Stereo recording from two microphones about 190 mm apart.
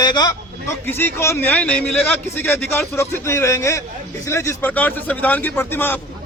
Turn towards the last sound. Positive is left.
turn(degrees=10)  # may be behind; listen again after turning